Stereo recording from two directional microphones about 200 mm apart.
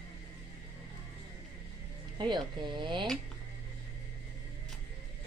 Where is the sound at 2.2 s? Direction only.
20° right (ahead or behind).